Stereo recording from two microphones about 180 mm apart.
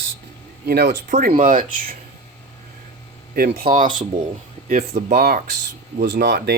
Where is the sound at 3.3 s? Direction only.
55° right (ahead or behind).